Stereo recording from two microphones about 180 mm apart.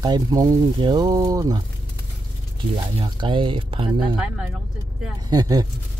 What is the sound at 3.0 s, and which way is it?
Speech, 25° right (ahead or behind).